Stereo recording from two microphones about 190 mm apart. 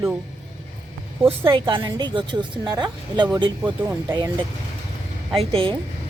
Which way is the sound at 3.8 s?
10° right (ahead or behind).